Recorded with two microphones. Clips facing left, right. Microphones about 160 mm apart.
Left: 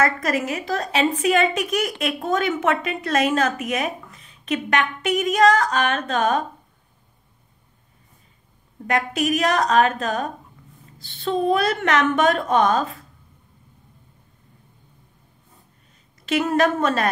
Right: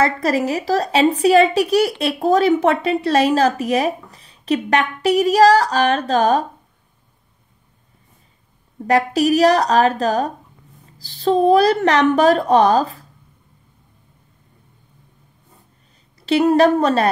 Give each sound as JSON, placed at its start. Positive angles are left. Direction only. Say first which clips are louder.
{"t": 0.0, "sound": "a woman's voice", "louder": "right 4 dB", "side_deg": -30}
{"t": 8.8, "sound": "a woman's voice", "louder": "right 6 dB", "side_deg": -35}
{"t": 16.2, "sound": "a woman's voice", "louder": "right 6 dB", "side_deg": -35}